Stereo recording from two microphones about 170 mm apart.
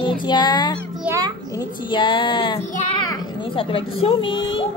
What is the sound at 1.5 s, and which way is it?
Speech, 25° left (ahead or behind).